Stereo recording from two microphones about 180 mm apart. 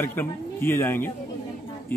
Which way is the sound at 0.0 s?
10° left (ahead or behind).